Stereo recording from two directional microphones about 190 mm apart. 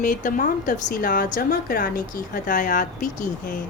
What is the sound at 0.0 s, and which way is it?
Speech, 45° left (ahead or behind).